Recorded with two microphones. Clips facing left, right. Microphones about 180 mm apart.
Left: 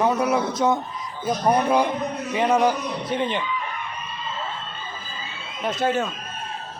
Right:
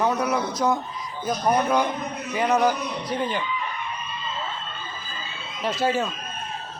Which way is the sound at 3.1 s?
25° left (ahead or behind).